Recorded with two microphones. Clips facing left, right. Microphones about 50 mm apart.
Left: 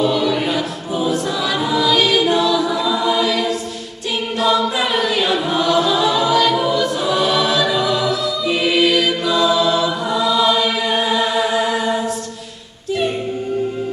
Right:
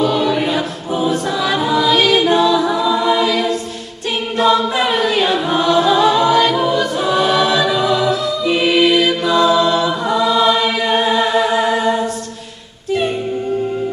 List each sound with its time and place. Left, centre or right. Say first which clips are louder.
0.1 s choir: right 2 dB; centre; by 7.1 s right
7.1 s choir: right 4 dB; centre